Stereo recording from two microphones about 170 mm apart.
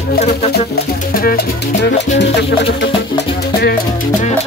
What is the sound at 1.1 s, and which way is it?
Music, 65° left (ahead or behind).